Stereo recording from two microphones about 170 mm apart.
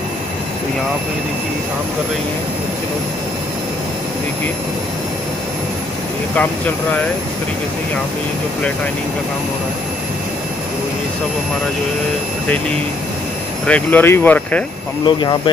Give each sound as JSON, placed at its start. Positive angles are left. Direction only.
{"t": 6.3, "sound": "speech", "side_deg": 10}
{"t": 13.7, "sound": "speech", "side_deg": 10}
{"t": 15.0, "sound": "speech", "side_deg": 25}